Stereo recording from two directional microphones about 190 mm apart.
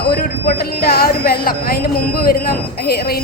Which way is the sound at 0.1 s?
55° left (ahead or behind).